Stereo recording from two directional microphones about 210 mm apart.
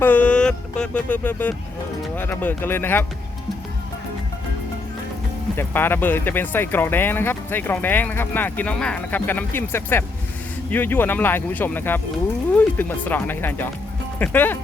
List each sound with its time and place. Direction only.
0.0 s a sound: 5° left (ahead or behind)
2.0 s speech: 10° left (ahead or behind)
5.5 s speech: 10° left (ahead or behind)